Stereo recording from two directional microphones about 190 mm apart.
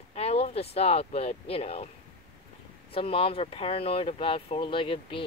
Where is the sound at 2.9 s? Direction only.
30° left (ahead or behind).